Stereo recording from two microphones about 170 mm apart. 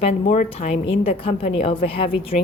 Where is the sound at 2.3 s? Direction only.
50° left (ahead or behind).